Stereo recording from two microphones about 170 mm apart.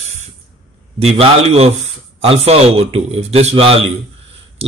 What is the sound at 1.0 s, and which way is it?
Speech, 35° right (ahead or behind).